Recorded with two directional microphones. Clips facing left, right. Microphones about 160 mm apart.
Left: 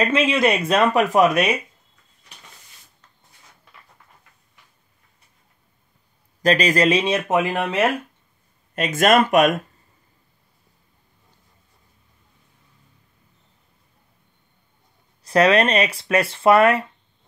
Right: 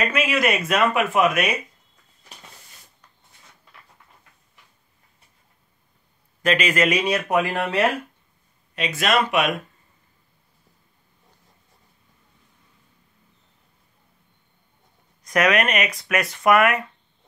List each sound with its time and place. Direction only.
0.0 s speech: 25° left (ahead or behind)
6.4 s speech: 35° left (ahead or behind); by 7.8 s 15° left (ahead or behind)
8.7 s speech: 50° left (ahead or behind)
15.2 s speech: 30° left (ahead or behind)